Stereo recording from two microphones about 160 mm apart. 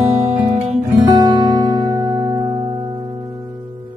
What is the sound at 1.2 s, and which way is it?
Music, 25° right (ahead or behind).